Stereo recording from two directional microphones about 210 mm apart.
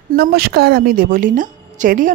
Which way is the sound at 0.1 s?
45° right (ahead or behind).